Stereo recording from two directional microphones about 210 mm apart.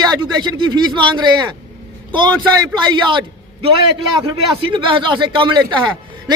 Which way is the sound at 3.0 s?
25° right (ahead or behind).